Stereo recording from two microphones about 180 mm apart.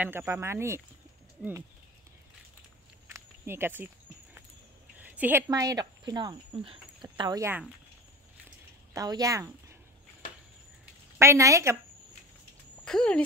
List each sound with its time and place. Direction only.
0.0 s speech: 10° right (ahead or behind)
3.1 s walk: 15° right (ahead or behind)
4.9 s a sound: 10° right (ahead or behind)
5.5 s speech: 20° right (ahead or behind)
8.9 s speech: 20° right (ahead or behind)
11.1 s speech: 15° right (ahead or behind)
12.8 s speech: 5° left (ahead or behind)